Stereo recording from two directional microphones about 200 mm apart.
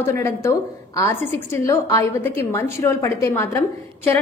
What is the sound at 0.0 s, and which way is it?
A woman's voice, 10° left (ahead or behind).